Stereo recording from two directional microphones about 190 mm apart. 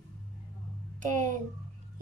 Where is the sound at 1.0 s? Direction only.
40° right (ahead or behind).